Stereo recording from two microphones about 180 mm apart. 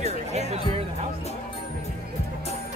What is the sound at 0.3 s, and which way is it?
Music, 35° right (ahead or behind).